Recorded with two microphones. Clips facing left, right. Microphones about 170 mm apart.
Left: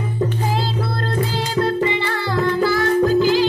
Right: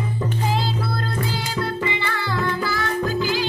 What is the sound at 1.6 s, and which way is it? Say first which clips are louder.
Music: left 7 dB; 45° left (ahead or behind).